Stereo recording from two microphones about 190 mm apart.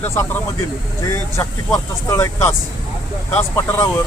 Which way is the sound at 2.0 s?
15° left (ahead or behind).